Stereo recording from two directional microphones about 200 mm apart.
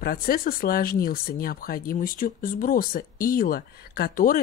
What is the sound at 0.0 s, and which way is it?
Speech, 50° left (ahead or behind).